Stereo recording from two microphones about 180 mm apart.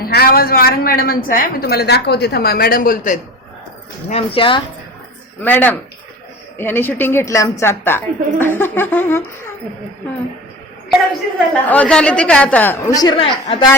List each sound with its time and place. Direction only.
0.0 s a woman's voice: 55° left (ahead or behind)
4.1 s speech: 30° left (ahead or behind)
5.4 s speech: 10° left (ahead or behind)
11.7 s speech: 5° left (ahead or behind); by 13.7 s 25° left (ahead or behind)